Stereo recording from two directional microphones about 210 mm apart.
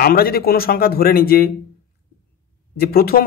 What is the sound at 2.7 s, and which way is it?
Speech, 45° left (ahead or behind).